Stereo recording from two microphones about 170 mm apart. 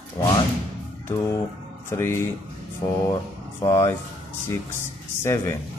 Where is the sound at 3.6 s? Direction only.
20° left (ahead or behind).